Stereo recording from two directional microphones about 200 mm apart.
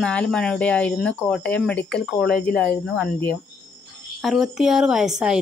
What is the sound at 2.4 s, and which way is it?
Speech, 10° left (ahead or behind).